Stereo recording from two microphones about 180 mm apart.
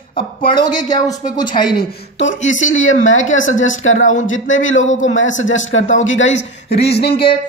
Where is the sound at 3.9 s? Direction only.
45° left (ahead or behind).